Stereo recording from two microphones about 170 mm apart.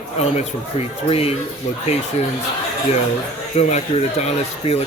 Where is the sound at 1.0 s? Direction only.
35° left (ahead or behind).